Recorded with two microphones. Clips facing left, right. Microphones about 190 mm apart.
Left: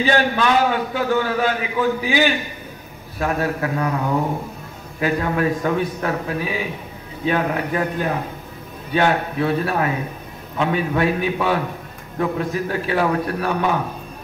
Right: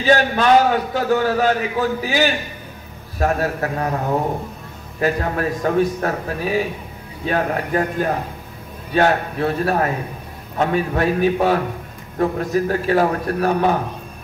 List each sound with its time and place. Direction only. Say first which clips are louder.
0.0 s a man's voice: right 2 dB; 40° right (ahead or behind)
5.0 s a man's voice: even; 40° right (ahead or behind)